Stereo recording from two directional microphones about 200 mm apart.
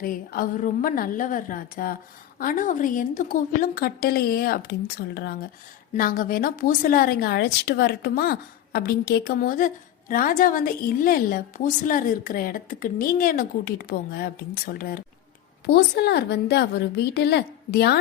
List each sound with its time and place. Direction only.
0.0 s a woman's voice: 45° left (ahead or behind)